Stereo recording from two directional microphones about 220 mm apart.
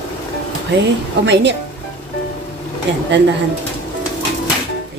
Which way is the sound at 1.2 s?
50° right (ahead or behind).